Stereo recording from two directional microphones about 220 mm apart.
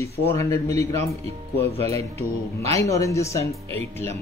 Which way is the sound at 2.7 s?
15° left (ahead or behind).